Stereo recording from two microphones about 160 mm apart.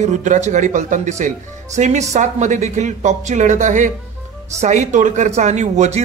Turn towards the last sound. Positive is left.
turn(degrees=-45)  # may be behind; listen again after turning